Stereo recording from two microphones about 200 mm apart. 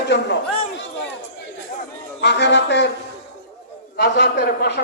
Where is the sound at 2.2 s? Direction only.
60° left (ahead or behind).